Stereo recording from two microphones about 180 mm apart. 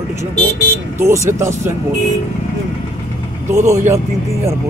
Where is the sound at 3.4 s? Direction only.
15° right (ahead or behind).